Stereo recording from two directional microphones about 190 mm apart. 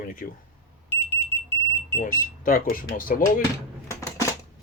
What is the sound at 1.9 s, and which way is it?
Speech, 45° left (ahead or behind).